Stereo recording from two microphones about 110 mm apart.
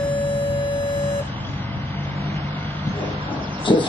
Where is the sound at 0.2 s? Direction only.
50° left (ahead or behind).